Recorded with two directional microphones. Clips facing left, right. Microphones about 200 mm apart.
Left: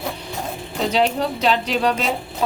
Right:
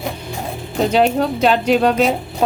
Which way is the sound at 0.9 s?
50° right (ahead or behind).